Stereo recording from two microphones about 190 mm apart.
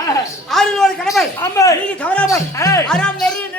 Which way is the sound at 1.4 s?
15° left (ahead or behind).